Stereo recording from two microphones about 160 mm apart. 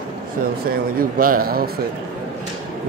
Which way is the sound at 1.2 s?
65° right (ahead or behind).